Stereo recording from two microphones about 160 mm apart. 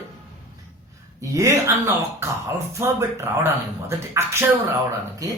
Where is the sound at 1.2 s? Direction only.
20° right (ahead or behind).